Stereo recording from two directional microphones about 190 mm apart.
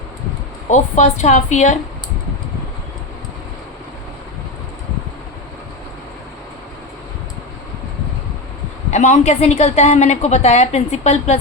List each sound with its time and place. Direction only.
0.7 s a woman's voice: 40° left (ahead or behind)
8.9 s a woman's voice: 40° left (ahead or behind)